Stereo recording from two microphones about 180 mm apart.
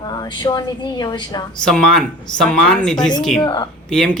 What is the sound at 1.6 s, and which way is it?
Speech, 5° left (ahead or behind).